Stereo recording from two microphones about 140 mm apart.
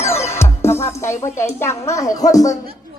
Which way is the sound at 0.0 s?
20° left (ahead or behind).